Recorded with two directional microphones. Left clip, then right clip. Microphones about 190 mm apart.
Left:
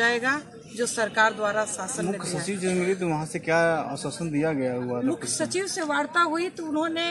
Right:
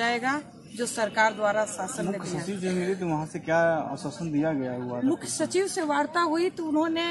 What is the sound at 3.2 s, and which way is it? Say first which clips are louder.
Speech: right 1 dB; 45° left (ahead or behind).